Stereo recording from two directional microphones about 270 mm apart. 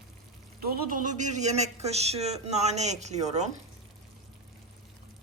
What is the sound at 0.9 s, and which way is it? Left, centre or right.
Speech, right.